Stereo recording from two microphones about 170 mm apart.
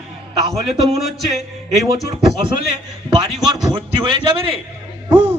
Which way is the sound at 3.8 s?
30° right (ahead or behind).